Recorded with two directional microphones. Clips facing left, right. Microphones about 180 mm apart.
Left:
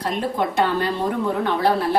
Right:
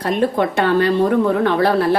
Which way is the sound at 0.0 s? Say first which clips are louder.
Right 6 dB; 70° right (ahead or behind).